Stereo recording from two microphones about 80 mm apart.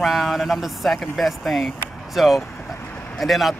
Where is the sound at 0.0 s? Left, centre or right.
Centre.